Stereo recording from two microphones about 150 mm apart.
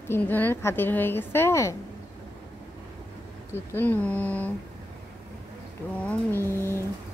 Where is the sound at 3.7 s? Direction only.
10° left (ahead or behind).